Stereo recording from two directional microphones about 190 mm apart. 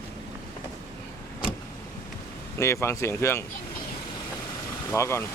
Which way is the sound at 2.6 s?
15° left (ahead or behind).